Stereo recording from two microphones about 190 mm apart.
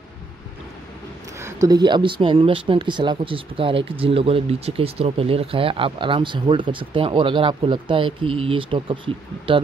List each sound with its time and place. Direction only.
1.4 s speech: 20° right (ahead or behind)